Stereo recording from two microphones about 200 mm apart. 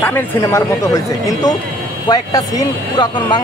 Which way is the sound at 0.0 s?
10° left (ahead or behind).